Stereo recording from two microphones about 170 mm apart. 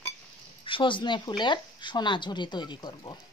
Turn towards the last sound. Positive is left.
turn(degrees=25)  # may be behind; listen again after turning